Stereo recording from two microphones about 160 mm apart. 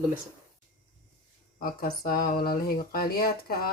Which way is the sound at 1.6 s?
60° left (ahead or behind).